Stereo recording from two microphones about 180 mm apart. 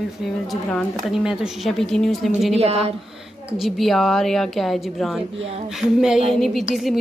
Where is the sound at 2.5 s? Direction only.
35° right (ahead or behind).